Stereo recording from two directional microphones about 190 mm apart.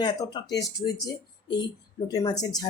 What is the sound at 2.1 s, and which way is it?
Speech, 20° left (ahead or behind).